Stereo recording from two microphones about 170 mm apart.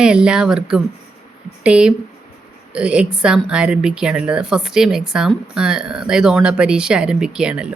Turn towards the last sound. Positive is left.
turn(degrees=-5)  # may be behind; listen again after turning